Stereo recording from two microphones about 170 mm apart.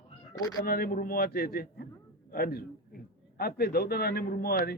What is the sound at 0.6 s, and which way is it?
A man's voice, 60° left (ahead or behind).